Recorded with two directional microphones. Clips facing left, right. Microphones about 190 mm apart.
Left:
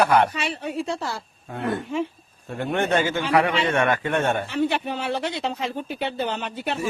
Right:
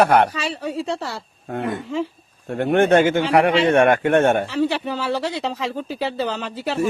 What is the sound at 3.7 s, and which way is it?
Speech, 60° right (ahead or behind).